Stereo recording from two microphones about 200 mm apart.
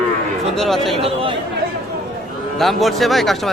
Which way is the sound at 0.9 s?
25° right (ahead or behind).